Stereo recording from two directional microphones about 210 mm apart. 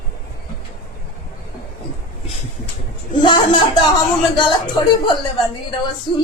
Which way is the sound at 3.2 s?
20° left (ahead or behind).